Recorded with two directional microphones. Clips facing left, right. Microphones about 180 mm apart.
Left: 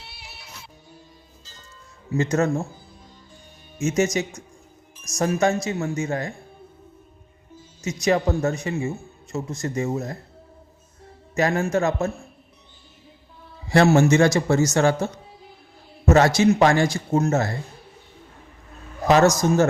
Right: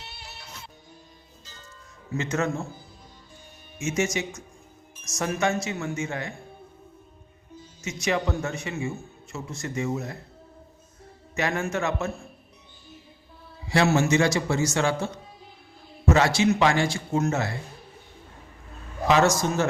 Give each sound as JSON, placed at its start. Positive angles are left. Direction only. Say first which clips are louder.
{"t": 0.2, "sound": "music", "louder": "right 1 dB", "side_deg": 10}
{"t": 2.1, "sound": "a woman's voice", "louder": "left 6 dB", "side_deg": 40}
{"t": 3.8, "sound": "a woman's voice", "louder": "left 5 dB", "side_deg": 40}
{"t": 7.8, "sound": "a woman's voice", "louder": "left 5 dB", "side_deg": 35}
{"t": 11.3, "sound": "a woman's voice", "louder": "left 6 dB", "side_deg": 40}
{"t": 13.7, "sound": "a man's voice", "louder": "left 5 dB", "side_deg": 45}
{"t": 19.0, "sound": "a woman's voice", "louder": "left 4 dB", "side_deg": 40}